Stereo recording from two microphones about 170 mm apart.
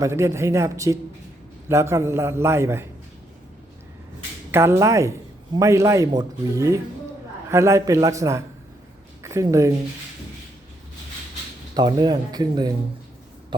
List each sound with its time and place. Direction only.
0.0 s a man's voice: 15° right (ahead or behind)
4.5 s a man's voice: 15° right (ahead or behind)
11.7 s speech: 25° right (ahead or behind)